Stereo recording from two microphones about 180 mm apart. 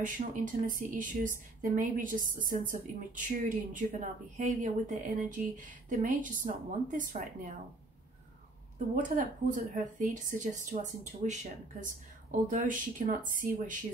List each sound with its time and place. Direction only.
0.0 s speech: 50° right (ahead or behind)
8.7 s speech: 45° right (ahead or behind)